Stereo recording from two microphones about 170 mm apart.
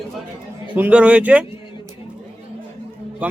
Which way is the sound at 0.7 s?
5° right (ahead or behind).